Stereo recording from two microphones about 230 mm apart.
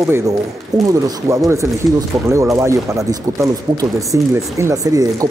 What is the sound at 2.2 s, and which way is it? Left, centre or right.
Speech, centre.